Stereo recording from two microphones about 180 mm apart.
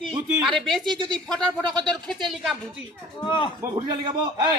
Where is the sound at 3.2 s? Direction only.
25° left (ahead or behind).